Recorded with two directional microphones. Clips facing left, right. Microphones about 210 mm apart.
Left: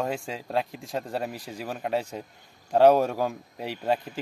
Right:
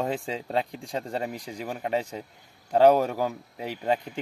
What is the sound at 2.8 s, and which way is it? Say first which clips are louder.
A man's voice: even; 10° right (ahead or behind).